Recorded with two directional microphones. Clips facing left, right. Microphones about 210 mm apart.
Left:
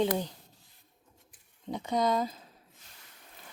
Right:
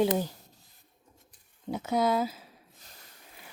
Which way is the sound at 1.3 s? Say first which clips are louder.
Right 2 dB; 5° right (ahead or behind).